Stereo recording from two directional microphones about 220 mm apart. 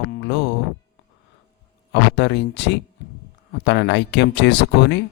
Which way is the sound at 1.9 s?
50° left (ahead or behind).